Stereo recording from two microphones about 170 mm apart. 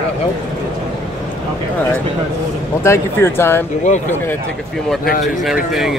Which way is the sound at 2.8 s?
15° left (ahead or behind).